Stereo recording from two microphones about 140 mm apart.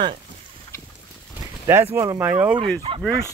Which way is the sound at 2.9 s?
40° right (ahead or behind).